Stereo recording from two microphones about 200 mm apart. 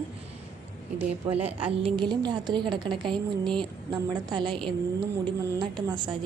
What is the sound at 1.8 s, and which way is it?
A woman's voice, 20° right (ahead or behind).